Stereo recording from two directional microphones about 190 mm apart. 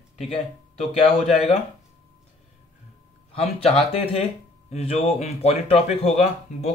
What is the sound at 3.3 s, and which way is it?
Speech, 30° left (ahead or behind).